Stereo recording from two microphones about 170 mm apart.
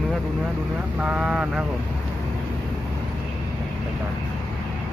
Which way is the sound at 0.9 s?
5° right (ahead or behind).